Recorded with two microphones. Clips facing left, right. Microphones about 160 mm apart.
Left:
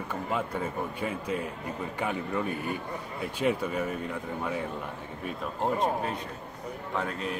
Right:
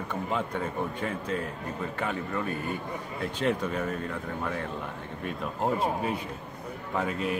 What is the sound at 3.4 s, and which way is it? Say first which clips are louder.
Speech: left 1 dB; 10° left (ahead or behind).